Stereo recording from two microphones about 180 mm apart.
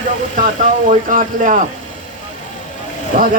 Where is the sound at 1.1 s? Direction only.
45° right (ahead or behind).